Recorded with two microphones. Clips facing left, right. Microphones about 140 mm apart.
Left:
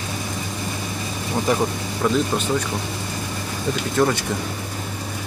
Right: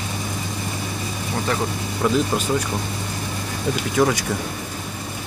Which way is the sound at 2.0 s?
5° right (ahead or behind).